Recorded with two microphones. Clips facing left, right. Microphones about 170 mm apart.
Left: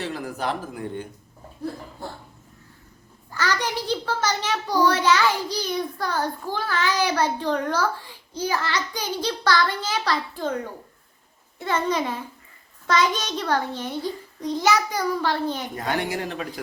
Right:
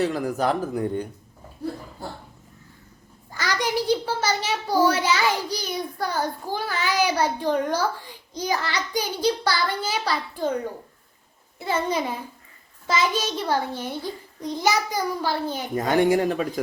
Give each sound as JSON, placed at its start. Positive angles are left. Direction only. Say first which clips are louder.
{"t": 0.0, "sound": "speech", "louder": "right 6 dB", "side_deg": -40}
{"t": 3.3, "sound": "a child's voice", "louder": "right 1 dB", "side_deg": -10}
{"t": 11.6, "sound": "a child's voice", "louder": "left 1 dB", "side_deg": -10}
{"t": 15.8, "sound": "speech", "louder": "right 9 dB", "side_deg": -45}